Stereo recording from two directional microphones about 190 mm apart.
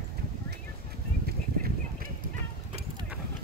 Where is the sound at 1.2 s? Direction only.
50° right (ahead or behind).